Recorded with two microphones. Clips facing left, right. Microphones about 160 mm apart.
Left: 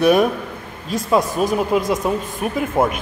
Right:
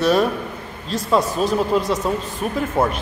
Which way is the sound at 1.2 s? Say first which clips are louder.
Left 1 dB; 50° left (ahead or behind).